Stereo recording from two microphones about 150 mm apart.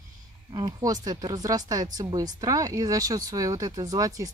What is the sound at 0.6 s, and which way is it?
Speech, 30° right (ahead or behind).